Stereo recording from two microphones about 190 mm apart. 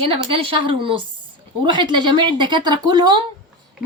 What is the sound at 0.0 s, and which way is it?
A woman's voice, 30° right (ahead or behind).